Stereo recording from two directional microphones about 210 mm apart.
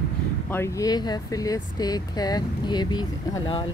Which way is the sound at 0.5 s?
15° left (ahead or behind).